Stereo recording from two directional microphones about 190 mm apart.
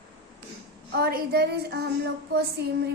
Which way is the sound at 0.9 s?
55° right (ahead or behind).